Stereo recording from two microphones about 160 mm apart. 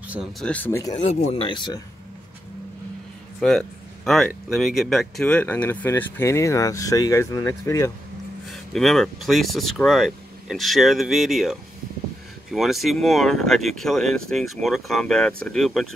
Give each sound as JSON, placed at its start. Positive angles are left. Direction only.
{"t": 0.1, "sound": "speech", "side_deg": -5}
{"t": 0.5, "sound": "speech", "side_deg": 10}
{"t": 3.3, "sound": "a sound", "side_deg": 0}
{"t": 4.3, "sound": "speech", "side_deg": 0}
{"t": 8.5, "sound": "speech", "side_deg": 0}